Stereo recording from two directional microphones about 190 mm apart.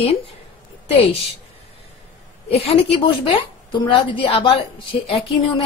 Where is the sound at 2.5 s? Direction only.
30° left (ahead or behind).